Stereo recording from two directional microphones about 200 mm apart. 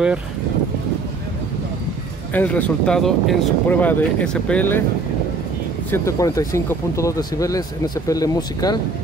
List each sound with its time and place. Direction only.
2.3 s speech: 10° left (ahead or behind)
5.9 s speech: 15° left (ahead or behind)